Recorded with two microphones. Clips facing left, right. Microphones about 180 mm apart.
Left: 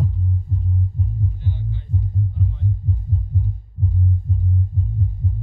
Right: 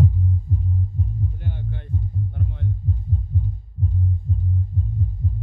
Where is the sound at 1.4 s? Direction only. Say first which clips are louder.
Left 2 dB; 60° right (ahead or behind).